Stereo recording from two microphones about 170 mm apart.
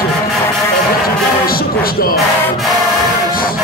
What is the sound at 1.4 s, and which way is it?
Music, 60° left (ahead or behind).